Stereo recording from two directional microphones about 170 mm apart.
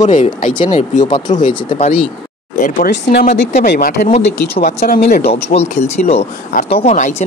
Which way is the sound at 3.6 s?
65° left (ahead or behind).